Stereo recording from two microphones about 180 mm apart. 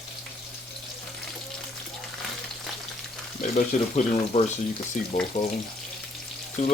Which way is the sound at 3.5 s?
40° left (ahead or behind).